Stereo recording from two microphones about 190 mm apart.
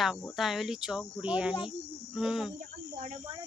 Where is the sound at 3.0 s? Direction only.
40° right (ahead or behind).